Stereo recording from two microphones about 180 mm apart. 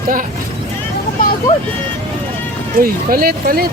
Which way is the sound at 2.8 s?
55° right (ahead or behind).